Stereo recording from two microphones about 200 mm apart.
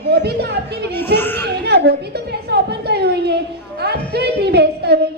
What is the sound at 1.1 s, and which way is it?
Speech, 10° left (ahead or behind).